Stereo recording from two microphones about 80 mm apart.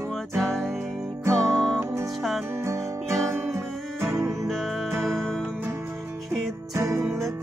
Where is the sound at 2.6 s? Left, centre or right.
Right.